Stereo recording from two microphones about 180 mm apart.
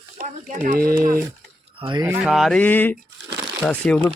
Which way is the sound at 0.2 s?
45° right (ahead or behind).